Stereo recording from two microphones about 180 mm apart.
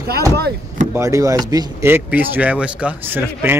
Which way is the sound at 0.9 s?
15° right (ahead or behind).